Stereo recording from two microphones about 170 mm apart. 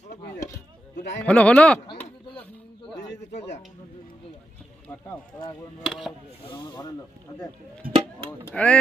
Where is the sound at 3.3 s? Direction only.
80° left.